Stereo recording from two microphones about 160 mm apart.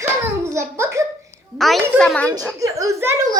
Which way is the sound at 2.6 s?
20° right (ahead or behind).